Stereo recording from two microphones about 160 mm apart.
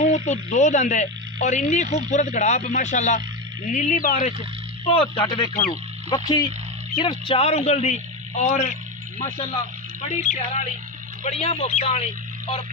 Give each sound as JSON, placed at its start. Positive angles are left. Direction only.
{"t": 0.0, "sound": "speech", "side_deg": 45}
{"t": 3.7, "sound": "speech", "side_deg": 60}
{"t": 4.8, "sound": "a man's voice", "side_deg": 35}
{"t": 10.0, "sound": "a man's voice", "side_deg": 50}